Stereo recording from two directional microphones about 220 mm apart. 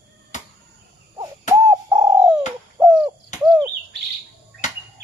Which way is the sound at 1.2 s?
15° right (ahead or behind).